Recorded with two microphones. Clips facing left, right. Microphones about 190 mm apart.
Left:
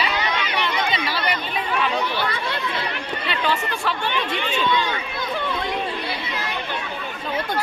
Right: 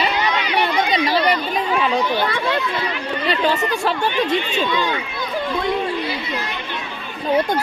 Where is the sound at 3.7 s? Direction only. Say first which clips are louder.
Right 5 dB; 40° right (ahead or behind).